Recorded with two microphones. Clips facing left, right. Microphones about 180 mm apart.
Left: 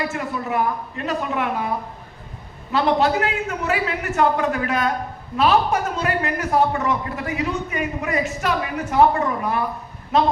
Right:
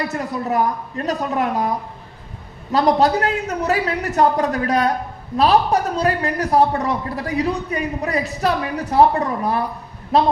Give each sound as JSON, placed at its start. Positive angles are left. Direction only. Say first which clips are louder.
{"t": 0.1, "sound": "a man's voice", "louder": "right 3 dB", "side_deg": -40}
{"t": 2.7, "sound": "a man's voice", "louder": "right 3 dB", "side_deg": -40}